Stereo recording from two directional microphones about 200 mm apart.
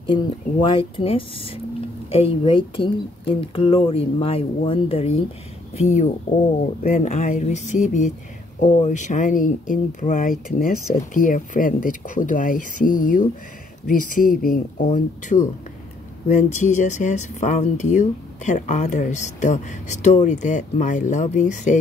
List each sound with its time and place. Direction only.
0.0 s speech: 25° left (ahead or behind)